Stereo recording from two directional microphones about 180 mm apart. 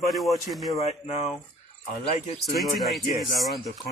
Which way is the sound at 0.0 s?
Centre (ahead or behind).